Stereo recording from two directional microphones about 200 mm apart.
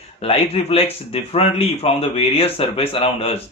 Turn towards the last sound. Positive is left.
turn(degrees=30)  # may be behind; listen again after turning